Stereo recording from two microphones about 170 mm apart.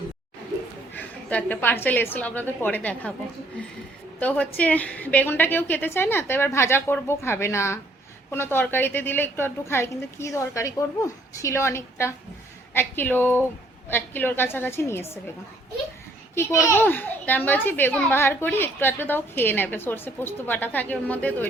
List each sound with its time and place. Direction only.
0.9 s a child's voice: 10° left (ahead or behind)
4.2 s a child's voice: 10° left (ahead or behind)
16.3 s a child's voice: 15° left (ahead or behind)